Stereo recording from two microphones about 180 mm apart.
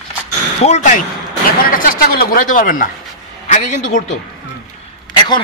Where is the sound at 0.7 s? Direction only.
45° left (ahead or behind).